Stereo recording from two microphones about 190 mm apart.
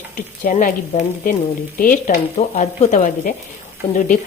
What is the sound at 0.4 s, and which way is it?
Speech, 40° left (ahead or behind).